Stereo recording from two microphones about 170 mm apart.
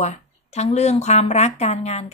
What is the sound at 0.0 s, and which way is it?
Speech, 40° left (ahead or behind).